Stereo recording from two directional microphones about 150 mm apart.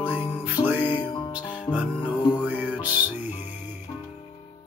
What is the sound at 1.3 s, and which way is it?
Music, 10° right (ahead or behind).